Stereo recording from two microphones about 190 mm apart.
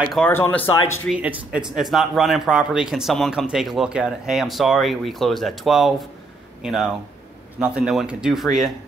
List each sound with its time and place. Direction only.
0.1 s speech: 5° left (ahead or behind)
1.0 s a man's voice: 5° right (ahead or behind)